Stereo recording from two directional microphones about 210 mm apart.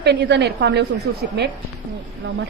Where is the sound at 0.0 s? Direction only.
50° right (ahead or behind).